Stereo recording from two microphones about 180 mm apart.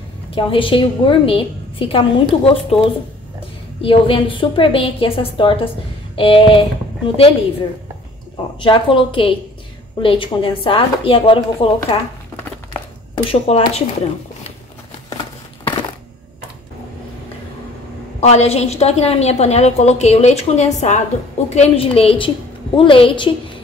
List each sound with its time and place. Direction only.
0.3 s a woman's voice: 30° left (ahead or behind)
8.5 s a woman's voice: 25° left (ahead or behind)
13.1 s speech: 30° left (ahead or behind)
18.2 s a woman's voice: 35° left (ahead or behind)